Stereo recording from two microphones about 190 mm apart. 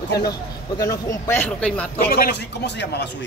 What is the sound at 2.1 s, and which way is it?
A man's voice, 55° left (ahead or behind).